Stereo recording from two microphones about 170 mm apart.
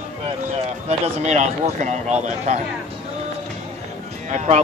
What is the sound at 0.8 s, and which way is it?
Speech, 45° right (ahead or behind).